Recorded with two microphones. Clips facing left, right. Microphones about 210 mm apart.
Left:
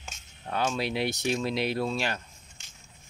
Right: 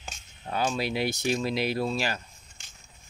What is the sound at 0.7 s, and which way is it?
Speech, centre (ahead or behind).